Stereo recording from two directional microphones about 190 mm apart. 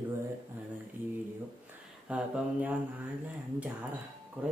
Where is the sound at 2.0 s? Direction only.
5° right (ahead or behind).